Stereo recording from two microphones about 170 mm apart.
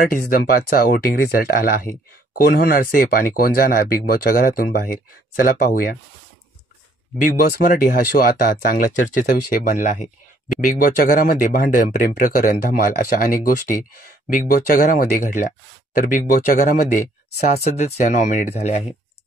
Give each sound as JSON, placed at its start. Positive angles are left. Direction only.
{"t": 0.0, "sound": "speech", "side_deg": 60}
{"t": 7.2, "sound": "speech", "side_deg": 55}
{"t": 14.5, "sound": "speech", "side_deg": 55}